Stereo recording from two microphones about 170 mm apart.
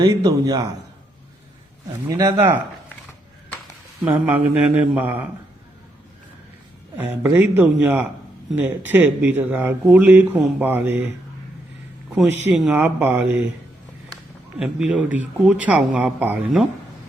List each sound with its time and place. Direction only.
0.0 s a man's voice: 25° right (ahead or behind)
2.0 s a man's voice: 20° right (ahead or behind)
4.0 s speech: 10° right (ahead or behind)
6.9 s speech: 10° right (ahead or behind)
12.1 s speech: 5° right (ahead or behind)
14.6 s speech: 5° right (ahead or behind)